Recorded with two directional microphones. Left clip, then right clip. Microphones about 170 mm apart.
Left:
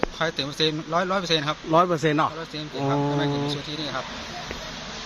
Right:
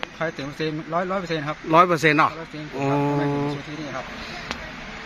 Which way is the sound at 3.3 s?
20° right (ahead or behind).